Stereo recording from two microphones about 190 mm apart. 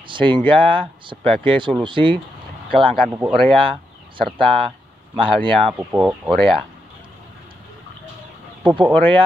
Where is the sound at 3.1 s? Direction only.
10° right (ahead or behind).